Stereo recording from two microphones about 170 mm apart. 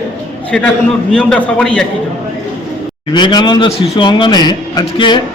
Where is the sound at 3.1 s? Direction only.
25° left (ahead or behind).